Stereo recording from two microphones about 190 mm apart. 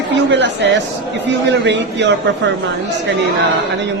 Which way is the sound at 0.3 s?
65° right (ahead or behind).